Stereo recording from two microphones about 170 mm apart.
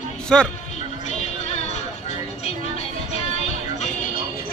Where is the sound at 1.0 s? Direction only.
40° left (ahead or behind).